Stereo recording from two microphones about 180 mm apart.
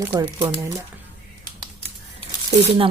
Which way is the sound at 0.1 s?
20° right (ahead or behind).